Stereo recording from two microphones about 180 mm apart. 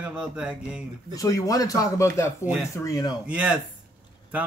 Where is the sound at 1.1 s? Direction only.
20° left (ahead or behind).